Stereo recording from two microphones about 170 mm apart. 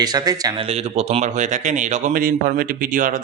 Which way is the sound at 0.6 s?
40° right (ahead or behind).